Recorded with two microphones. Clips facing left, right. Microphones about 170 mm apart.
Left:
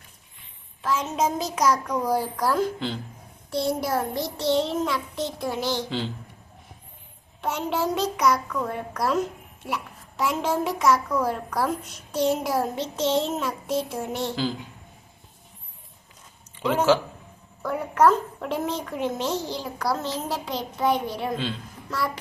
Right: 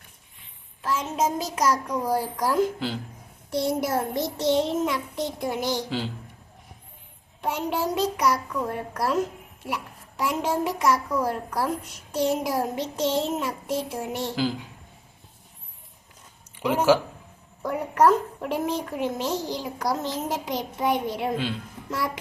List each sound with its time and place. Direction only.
0.8 s a child's voice: 10° right (ahead or behind)
7.4 s a child's voice: 10° right (ahead or behind)
16.6 s a child's voice: 10° right (ahead or behind)